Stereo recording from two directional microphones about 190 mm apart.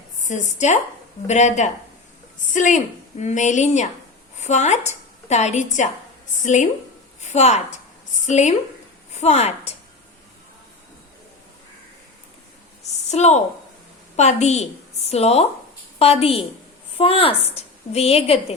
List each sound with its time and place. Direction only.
0.2 s a woman's voice: 40° left (ahead or behind)
13.1 s a woman's voice: 35° left (ahead or behind)